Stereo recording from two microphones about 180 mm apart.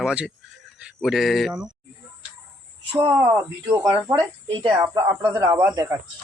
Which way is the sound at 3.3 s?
10° right (ahead or behind).